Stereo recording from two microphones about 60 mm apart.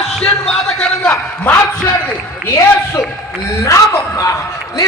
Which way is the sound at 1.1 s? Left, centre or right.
Left.